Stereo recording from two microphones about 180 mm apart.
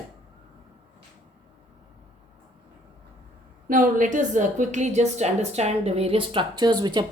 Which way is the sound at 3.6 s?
45° right (ahead or behind).